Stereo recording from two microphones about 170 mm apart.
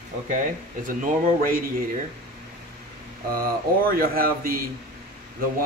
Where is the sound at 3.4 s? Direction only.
60° right (ahead or behind).